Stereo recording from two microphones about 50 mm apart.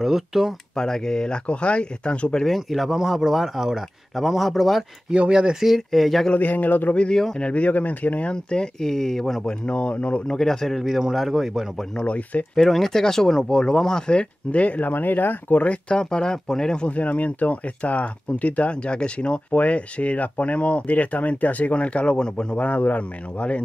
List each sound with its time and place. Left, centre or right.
0.0 s speech: centre
0.7 s speech: centre
2.4 s speech: centre
5.1 s speech: centre
5.7 s speech: centre
6.3 s speech: left
7.0 s speech: centre
7.4 s speech: left; by 9.4 s centre
9.5 s speech: left
10.3 s speech: centre
11.0 s speech: centre
12.3 s speech: left
12.6 s speech: centre; by 15.8 s left
15.9 s speech: centre